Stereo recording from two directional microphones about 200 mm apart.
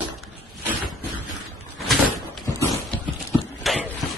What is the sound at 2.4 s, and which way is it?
Dog, 15° left (ahead or behind).